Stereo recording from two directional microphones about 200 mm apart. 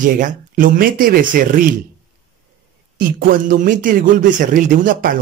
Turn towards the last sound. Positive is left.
turn(degrees=-45)  # may be behind; listen again after turning